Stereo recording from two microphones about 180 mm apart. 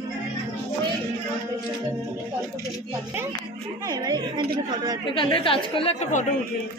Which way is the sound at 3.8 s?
20° right (ahead or behind).